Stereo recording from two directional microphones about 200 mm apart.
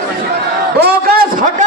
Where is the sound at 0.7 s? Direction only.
50° right (ahead or behind).